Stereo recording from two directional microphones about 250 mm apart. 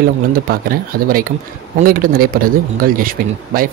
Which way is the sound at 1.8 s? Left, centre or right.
Right.